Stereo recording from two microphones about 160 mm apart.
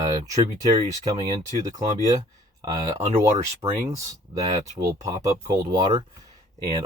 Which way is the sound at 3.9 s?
20° right (ahead or behind).